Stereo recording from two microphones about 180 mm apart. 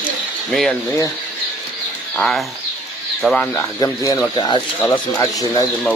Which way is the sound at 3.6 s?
20° left (ahead or behind).